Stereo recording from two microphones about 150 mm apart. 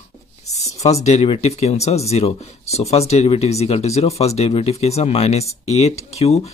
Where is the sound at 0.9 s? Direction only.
45° left (ahead or behind).